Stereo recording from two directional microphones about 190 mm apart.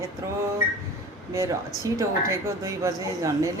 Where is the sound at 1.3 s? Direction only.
15° right (ahead or behind).